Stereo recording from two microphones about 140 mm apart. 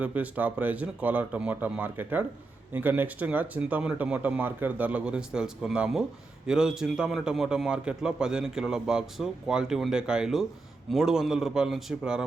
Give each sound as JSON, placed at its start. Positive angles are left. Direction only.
{"t": 0.0, "sound": "a man's voice", "side_deg": -10}